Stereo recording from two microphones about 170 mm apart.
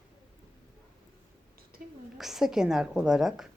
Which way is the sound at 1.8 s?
55° right (ahead or behind).